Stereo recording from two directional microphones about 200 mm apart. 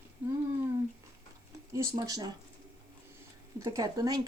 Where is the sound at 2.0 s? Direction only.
20° right (ahead or behind).